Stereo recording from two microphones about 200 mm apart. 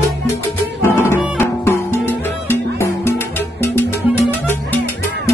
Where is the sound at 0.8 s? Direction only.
10° left (ahead or behind).